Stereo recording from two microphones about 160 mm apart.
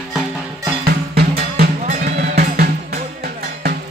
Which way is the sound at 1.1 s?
75° right (ahead or behind).